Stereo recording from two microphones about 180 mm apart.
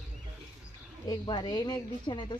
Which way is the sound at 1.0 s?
25° left (ahead or behind).